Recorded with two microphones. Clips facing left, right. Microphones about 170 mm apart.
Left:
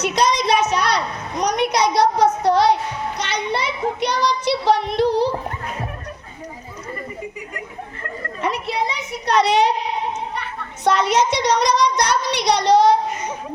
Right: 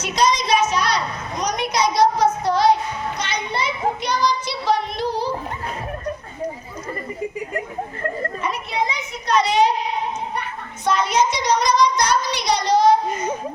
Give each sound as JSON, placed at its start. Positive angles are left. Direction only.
{"t": 0.0, "sound": "a sound", "side_deg": 60}
{"t": 3.2, "sound": "child singing", "side_deg": 70}
{"t": 8.4, "sound": "a child's voice", "side_deg": 75}
{"t": 10.8, "sound": "a child's voice", "side_deg": 75}